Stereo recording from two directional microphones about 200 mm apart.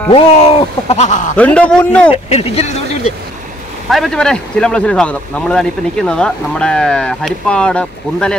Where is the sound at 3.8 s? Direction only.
Centre (ahead or behind).